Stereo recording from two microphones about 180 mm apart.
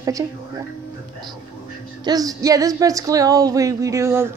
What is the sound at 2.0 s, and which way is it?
Music, 20° right (ahead or behind).